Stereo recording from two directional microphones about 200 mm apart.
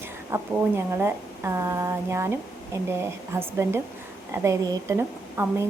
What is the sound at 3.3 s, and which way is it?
A woman's voice, 10° right (ahead or behind).